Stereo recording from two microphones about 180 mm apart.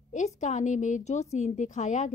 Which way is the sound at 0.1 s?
40° left (ahead or behind).